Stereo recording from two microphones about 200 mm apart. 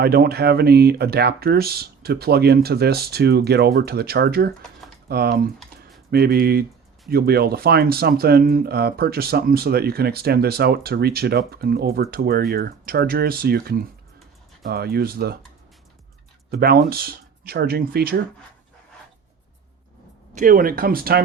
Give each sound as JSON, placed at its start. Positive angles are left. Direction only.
{"t": 0.0, "sound": "speech", "side_deg": -50}
{"t": 16.5, "sound": "speech", "side_deg": -50}
{"t": 20.3, "sound": "speech", "side_deg": -45}